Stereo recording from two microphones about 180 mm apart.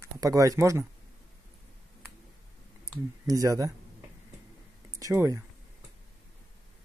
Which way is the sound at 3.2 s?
20° right (ahead or behind).